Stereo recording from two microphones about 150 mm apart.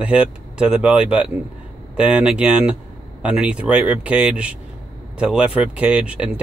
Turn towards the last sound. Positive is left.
turn(degrees=-5)  # may be behind; listen again after turning